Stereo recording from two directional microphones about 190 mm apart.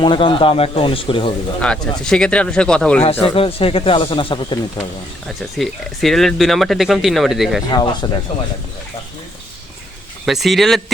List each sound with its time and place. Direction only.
0.0 s speech: 25° left (ahead or behind)
1.6 s speech: 5° left (ahead or behind)
3.0 s speech: 30° left (ahead or behind)
5.4 s speech: centre (ahead or behind)
7.7 s speech: 20° left (ahead or behind)
10.2 s speech: centre (ahead or behind)